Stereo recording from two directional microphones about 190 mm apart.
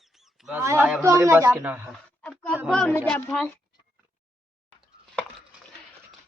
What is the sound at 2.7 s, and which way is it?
Speech, 5° left (ahead or behind).